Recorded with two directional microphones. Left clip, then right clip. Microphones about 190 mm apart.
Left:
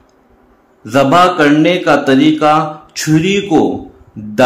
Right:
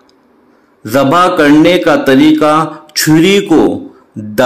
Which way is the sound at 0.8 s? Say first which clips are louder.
Even; 25° right (ahead or behind).